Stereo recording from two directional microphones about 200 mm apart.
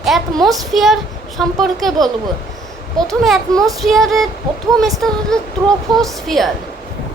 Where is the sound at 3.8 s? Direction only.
Centre (ahead or behind).